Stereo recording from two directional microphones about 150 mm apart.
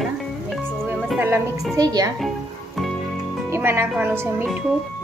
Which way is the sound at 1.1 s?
15° right (ahead or behind).